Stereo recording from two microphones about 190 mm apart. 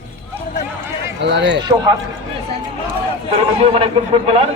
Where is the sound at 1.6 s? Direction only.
20° right (ahead or behind).